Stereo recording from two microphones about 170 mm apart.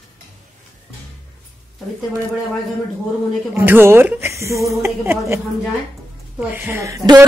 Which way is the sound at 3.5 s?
15° right (ahead or behind).